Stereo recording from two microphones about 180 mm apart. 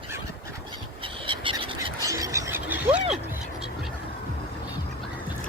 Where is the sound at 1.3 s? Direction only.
30° right (ahead or behind).